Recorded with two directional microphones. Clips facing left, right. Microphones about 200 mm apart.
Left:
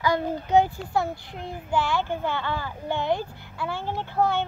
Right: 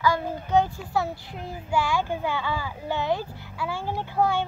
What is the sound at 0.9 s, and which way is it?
Speech, 5° right (ahead or behind).